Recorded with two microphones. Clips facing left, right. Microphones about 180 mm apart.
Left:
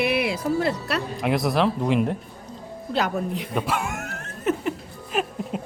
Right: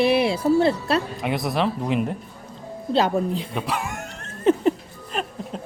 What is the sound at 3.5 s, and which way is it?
Dog, centre (ahead or behind).